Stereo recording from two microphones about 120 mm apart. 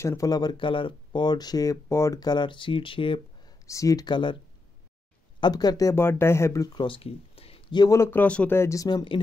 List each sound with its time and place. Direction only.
0.0 s speech: 25° left (ahead or behind); by 3.5 s 45° left (ahead or behind)
3.6 s speech: 25° left (ahead or behind)
5.4 s speech: 35° left (ahead or behind)
7.9 s speech: 20° left (ahead or behind)
8.5 s speech: 25° left (ahead or behind)